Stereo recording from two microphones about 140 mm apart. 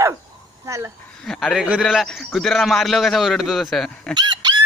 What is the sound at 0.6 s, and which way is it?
Gasp, 20° right (ahead or behind).